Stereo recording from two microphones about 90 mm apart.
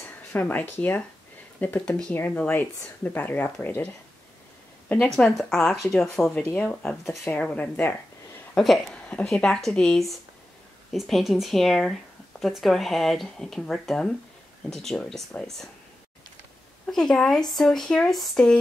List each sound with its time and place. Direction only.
0.3 s speech: 20° left (ahead or behind)
5.1 s speech: 5° left (ahead or behind)
8.5 s speech: centre (ahead or behind)
16.8 s speech: 5° left (ahead or behind)